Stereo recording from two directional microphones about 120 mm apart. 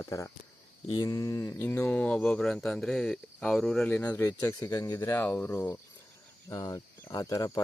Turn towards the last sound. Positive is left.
turn(degrees=30)  # may be behind; listen again after turning